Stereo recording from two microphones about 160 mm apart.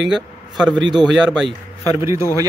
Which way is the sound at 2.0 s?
20° right (ahead or behind).